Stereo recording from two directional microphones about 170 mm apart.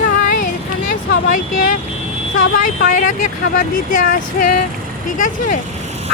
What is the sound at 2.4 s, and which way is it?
Speech, 55° left (ahead or behind).